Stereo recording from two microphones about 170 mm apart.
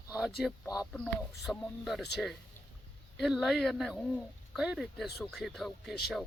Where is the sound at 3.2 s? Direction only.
Centre (ahead or behind).